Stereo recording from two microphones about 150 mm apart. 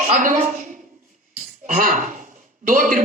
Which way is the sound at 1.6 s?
60° right (ahead or behind).